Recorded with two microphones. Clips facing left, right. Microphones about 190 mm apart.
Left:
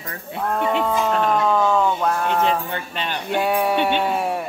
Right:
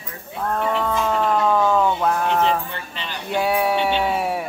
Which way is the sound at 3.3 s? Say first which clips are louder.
Even; centre (ahead or behind).